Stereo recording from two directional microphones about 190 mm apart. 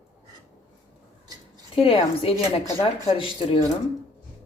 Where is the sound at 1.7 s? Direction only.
30° left (ahead or behind).